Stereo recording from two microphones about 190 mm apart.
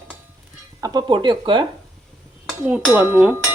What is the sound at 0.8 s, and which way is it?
Speech, 20° right (ahead or behind).